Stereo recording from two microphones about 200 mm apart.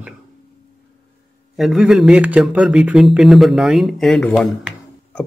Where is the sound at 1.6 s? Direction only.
5° right (ahead or behind).